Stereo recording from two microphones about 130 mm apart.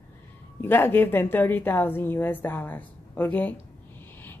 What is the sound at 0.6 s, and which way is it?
Speech, 15° left (ahead or behind).